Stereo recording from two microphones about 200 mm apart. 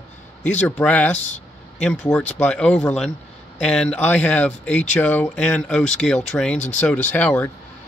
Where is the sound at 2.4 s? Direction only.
5° left (ahead or behind).